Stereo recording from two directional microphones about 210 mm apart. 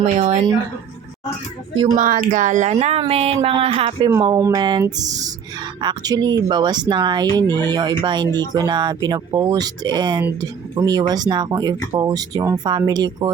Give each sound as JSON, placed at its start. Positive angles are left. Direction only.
{"t": 0.0, "sound": "speech", "side_deg": -30}
{"t": 1.7, "sound": "speech", "side_deg": -25}
{"t": 2.0, "sound": "speech", "side_deg": -40}
{"t": 4.1, "sound": "speech", "side_deg": -15}